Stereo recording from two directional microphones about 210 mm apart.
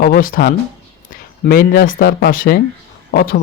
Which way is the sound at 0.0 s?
45° left (ahead or behind).